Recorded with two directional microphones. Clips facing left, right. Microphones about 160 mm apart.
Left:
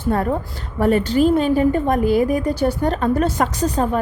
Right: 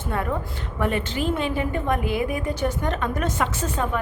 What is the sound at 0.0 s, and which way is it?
A woman's voice, 40° left (ahead or behind).